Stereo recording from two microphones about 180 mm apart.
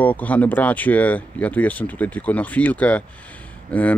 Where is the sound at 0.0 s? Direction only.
10° left (ahead or behind).